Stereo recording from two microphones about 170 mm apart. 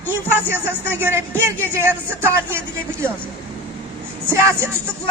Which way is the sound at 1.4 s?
10° right (ahead or behind).